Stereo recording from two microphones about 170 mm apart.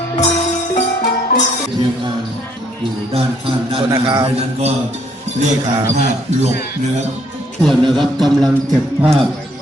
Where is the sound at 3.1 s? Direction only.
30° right (ahead or behind).